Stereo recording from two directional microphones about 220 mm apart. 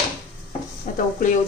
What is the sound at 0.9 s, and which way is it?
Speech, 35° left (ahead or behind).